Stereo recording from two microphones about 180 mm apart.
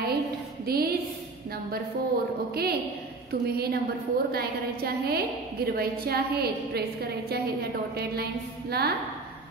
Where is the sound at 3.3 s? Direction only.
60° right (ahead or behind).